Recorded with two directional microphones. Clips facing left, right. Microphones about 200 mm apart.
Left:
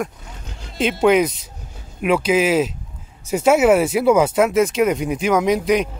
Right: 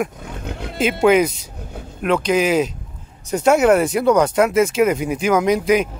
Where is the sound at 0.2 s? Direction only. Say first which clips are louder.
Right 10 dB; 60° right (ahead or behind).